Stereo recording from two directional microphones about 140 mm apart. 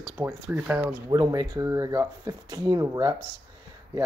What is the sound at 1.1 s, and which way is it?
Speech, 25° right (ahead or behind).